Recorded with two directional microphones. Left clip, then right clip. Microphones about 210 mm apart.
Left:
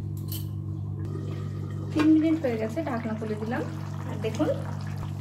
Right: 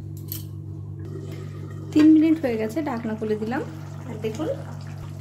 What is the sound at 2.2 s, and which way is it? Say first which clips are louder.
Speech: right 4 dB; 60° right (ahead or behind).